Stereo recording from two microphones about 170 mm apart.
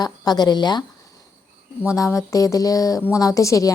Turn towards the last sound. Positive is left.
turn(degrees=20)  # may be behind; listen again after turning